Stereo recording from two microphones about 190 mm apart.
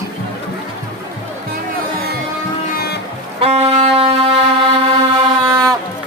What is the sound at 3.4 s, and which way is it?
Music, 30° right (ahead or behind).